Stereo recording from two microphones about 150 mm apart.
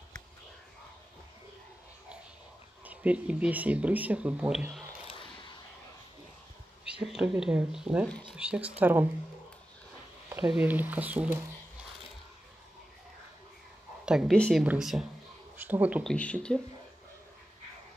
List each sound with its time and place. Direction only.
2.8 s speech: 10° right (ahead or behind)
5.1 s a sound: 30° left (ahead or behind)
6.9 s speech: 5° right (ahead or behind)
10.3 s speech: 10° right (ahead or behind)
14.0 s speech: centre (ahead or behind)
16.0 s speech: 5° left (ahead or behind)